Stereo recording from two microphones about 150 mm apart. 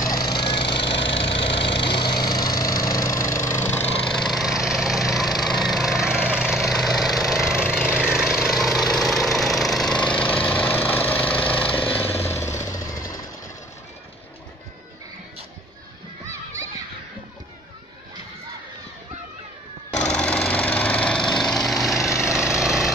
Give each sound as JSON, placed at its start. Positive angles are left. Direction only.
{"t": 0.4, "sound": "splinter", "side_deg": 30}
{"t": 4.1, "sound": "splinter", "side_deg": 0}
{"t": 7.9, "sound": "engine", "side_deg": -5}
{"t": 11.6, "sound": "jackhammer", "side_deg": 10}
{"t": 20.0, "sound": "lawn mower", "side_deg": 5}